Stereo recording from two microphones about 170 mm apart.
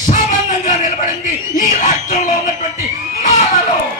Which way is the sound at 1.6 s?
50° left (ahead or behind).